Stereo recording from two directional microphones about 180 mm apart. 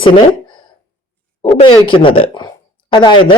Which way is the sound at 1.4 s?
25° left (ahead or behind).